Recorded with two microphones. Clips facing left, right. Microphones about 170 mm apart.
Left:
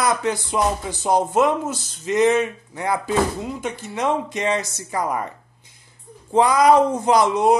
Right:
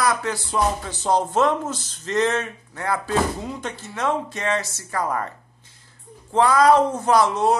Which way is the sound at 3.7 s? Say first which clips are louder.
Left 2 dB; 15° left (ahead or behind).